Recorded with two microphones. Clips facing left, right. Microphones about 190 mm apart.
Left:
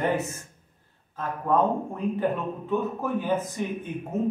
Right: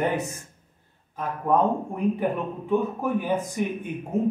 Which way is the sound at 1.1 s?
15° right (ahead or behind).